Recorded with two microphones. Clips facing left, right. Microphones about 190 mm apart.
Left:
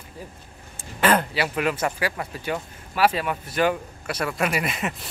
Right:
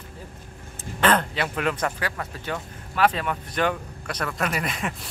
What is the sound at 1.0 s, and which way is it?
A man's voice, 10° left (ahead or behind).